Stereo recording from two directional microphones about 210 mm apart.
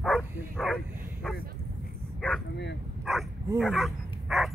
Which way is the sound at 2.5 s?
55° left (ahead or behind).